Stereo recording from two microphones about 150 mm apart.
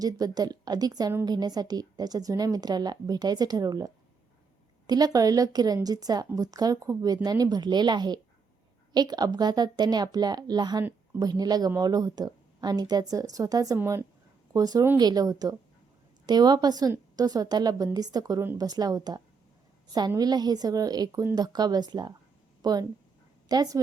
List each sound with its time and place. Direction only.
0.0 s a woman's voice: 25° right (ahead or behind)